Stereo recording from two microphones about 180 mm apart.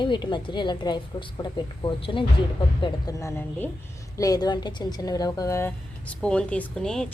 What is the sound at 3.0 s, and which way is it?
A woman's voice, 15° left (ahead or behind).